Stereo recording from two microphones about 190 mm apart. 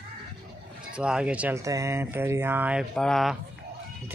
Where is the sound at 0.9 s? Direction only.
5° right (ahead or behind).